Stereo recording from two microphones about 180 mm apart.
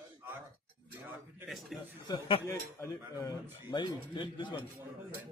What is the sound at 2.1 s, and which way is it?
Speech, 30° left (ahead or behind).